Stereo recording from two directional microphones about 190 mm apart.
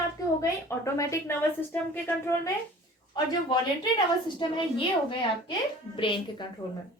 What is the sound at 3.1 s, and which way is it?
Speech, 20° left (ahead or behind).